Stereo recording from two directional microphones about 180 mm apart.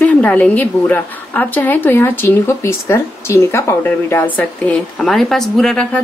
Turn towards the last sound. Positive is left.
turn(degrees=5)  # may be behind; listen again after turning